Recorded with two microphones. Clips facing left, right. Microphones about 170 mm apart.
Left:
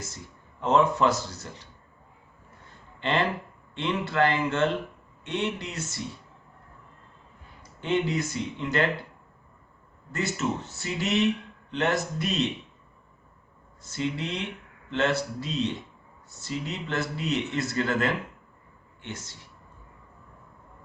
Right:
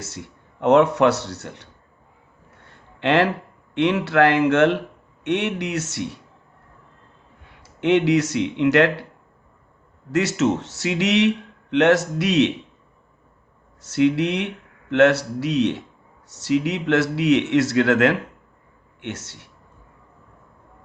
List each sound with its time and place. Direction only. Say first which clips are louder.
0.0 s speech: right 6 dB; 75° right (ahead or behind)
2.6 s a sound: right 8 dB; 70° right (ahead or behind)
3.8 s speech: right 8 dB; 75° right (ahead or behind)
7.4 s speech: right 11 dB; 80° right
10.1 s speech: right 9 dB; 80° right
13.8 s speech: right 12 dB; 70° right (ahead or behind)